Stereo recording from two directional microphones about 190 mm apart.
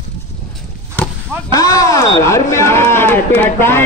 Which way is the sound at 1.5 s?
20° left (ahead or behind).